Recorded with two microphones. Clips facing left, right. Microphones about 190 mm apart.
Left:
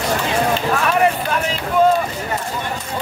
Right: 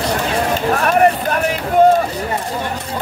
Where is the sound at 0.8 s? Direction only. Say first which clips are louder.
Right 5 dB; 45° right (ahead or behind).